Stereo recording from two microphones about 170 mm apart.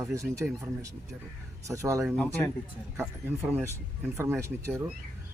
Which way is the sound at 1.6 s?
20° right (ahead or behind).